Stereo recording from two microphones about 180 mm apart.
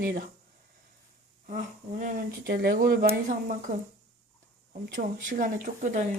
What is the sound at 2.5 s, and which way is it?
Speech, 55° right (ahead or behind).